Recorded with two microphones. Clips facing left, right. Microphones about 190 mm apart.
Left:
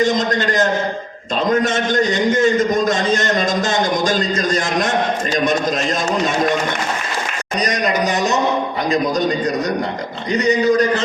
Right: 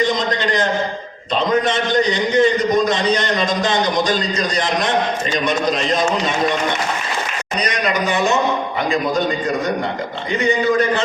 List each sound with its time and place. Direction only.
0.0 s a man's voice: 45° left (ahead or behind)
7.6 s speech: 40° left (ahead or behind)
10.3 s speech: 40° left (ahead or behind)